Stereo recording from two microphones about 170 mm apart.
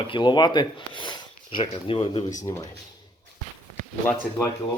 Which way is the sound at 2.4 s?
20° left (ahead or behind).